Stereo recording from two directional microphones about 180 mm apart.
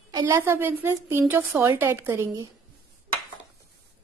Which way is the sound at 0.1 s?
20° right (ahead or behind).